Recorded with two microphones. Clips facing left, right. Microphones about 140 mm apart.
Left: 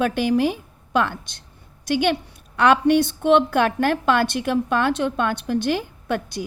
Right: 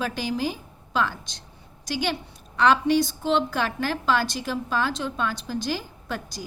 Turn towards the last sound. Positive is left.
turn(degrees=60)  # may be behind; listen again after turning